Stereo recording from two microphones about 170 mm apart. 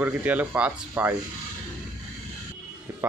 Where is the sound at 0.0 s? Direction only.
10° right (ahead or behind).